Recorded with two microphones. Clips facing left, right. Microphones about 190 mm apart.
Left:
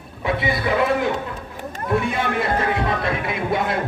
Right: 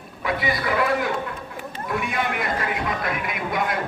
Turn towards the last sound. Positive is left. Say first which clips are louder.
# left 3 dB
turn(degrees=25)  # may be behind; listen again after turning